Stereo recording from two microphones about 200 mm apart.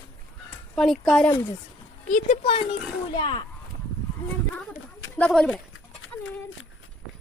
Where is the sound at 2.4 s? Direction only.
25° left (ahead or behind).